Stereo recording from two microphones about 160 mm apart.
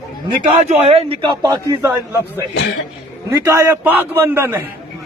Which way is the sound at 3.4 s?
15° right (ahead or behind).